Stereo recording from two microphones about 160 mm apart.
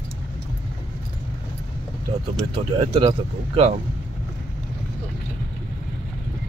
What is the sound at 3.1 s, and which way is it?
Speech, 40° right (ahead or behind).